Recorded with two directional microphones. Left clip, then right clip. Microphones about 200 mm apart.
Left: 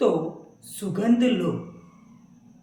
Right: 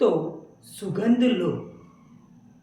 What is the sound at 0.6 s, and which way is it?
Speech, centre (ahead or behind).